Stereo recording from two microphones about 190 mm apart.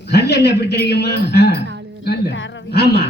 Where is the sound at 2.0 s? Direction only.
75° left (ahead or behind); by 3.1 s 60° left (ahead or behind).